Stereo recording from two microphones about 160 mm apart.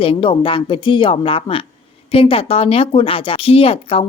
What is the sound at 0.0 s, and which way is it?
A woman's voice, 35° left (ahead or behind).